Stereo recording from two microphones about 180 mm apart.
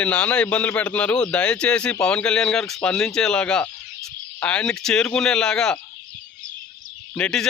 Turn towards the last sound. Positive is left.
turn(degrees=5)  # may be behind; listen again after turning